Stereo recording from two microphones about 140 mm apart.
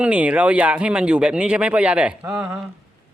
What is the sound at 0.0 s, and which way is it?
Speech, 10° right (ahead or behind).